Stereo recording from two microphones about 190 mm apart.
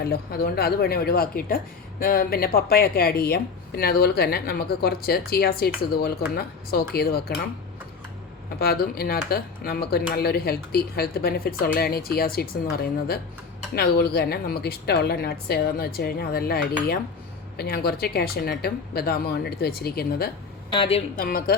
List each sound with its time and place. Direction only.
0.0 s a woman's voice: 55° left (ahead or behind)
8.5 s a woman's voice: 55° left (ahead or behind)
20.7 s a woman's voice: 30° left (ahead or behind)
21.2 s a woman's voice: 50° left (ahead or behind)